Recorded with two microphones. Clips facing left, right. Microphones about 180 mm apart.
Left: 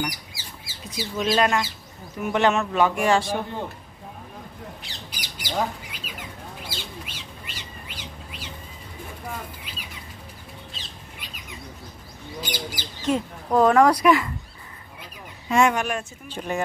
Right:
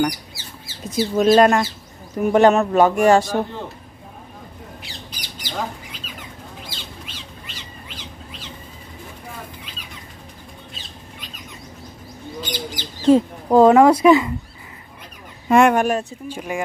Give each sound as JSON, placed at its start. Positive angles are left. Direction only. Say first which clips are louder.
{"t": 0.8, "sound": "speech", "louder": "right 10 dB", "side_deg": -45}
{"t": 5.1, "sound": "squawk", "louder": "left 2 dB", "side_deg": 10}
{"t": 6.7, "sound": "bird", "louder": "even", "side_deg": 10}
{"t": 12.4, "sound": "bird", "louder": "right 3 dB", "side_deg": 10}
{"t": 13.0, "sound": "speech", "louder": "right 10 dB", "side_deg": -30}
{"t": 15.4, "sound": "speech", "louder": "right 6 dB", "side_deg": -55}
{"t": 16.3, "sound": "speech", "louder": "left 2 dB", "side_deg": -10}